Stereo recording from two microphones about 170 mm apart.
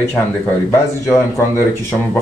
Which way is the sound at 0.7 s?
15° left (ahead or behind).